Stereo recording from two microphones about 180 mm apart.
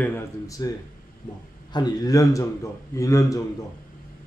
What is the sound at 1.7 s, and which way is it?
A man's voice, 20° left (ahead or behind).